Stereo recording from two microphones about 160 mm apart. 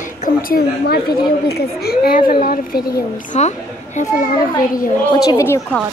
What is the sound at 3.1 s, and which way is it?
A woman's voice, 50° left (ahead or behind).